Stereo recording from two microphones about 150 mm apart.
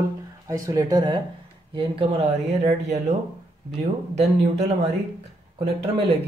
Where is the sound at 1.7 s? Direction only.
40° right (ahead or behind).